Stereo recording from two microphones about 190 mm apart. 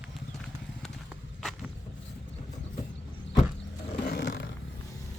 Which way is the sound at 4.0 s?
50° left (ahead or behind).